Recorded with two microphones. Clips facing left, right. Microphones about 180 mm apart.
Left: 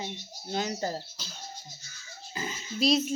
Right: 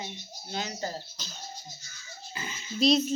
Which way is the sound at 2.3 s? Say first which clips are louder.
Left 4 dB; 40° left (ahead or behind).